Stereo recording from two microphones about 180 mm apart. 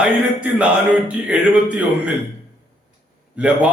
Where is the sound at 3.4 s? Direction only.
5° right (ahead or behind).